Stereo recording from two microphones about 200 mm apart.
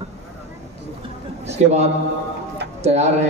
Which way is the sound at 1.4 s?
35° right (ahead or behind).